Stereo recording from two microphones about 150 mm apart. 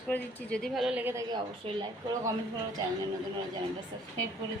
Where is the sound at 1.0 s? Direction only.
15° right (ahead or behind).